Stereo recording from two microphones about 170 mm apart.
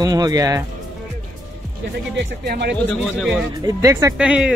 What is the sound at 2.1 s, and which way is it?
Speech, 70° right (ahead or behind).